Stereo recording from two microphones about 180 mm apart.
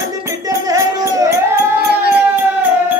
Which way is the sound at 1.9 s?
65° right (ahead or behind).